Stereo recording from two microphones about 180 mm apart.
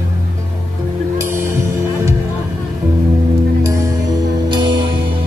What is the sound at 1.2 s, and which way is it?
Music, 15° right (ahead or behind).